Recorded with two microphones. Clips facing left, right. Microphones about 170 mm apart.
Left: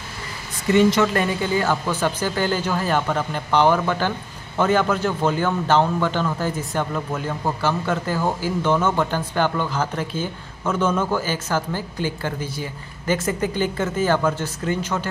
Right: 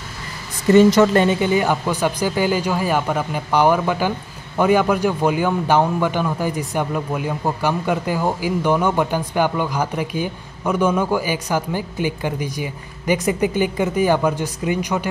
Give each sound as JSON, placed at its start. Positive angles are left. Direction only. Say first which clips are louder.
{"t": 0.7, "sound": "speech", "louder": "right 5 dB", "side_deg": -40}
{"t": 1.1, "sound": "a man's voice", "louder": "right 5 dB", "side_deg": -25}